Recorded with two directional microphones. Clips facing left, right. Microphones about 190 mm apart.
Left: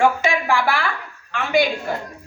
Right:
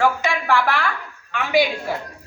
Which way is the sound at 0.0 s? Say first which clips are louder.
Left 2 dB; 10° left (ahead or behind).